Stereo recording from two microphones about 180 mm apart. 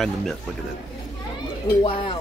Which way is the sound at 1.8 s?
30° left (ahead or behind).